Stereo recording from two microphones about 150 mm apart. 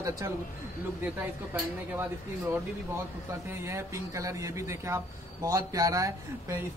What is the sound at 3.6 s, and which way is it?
Speech, 20° right (ahead or behind).